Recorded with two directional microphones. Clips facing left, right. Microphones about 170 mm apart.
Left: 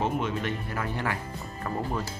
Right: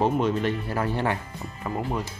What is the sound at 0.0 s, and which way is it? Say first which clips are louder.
Speech: right 6 dB; 35° right (ahead or behind).